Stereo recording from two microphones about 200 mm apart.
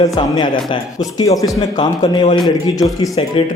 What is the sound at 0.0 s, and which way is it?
A man's voice, 20° left (ahead or behind).